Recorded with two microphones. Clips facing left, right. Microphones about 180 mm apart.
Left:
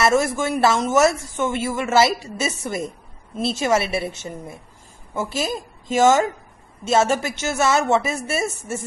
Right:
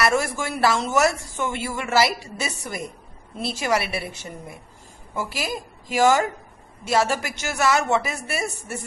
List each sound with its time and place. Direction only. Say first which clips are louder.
0.0 s a woman's voice: left 4 dB; 25° left (ahead or behind)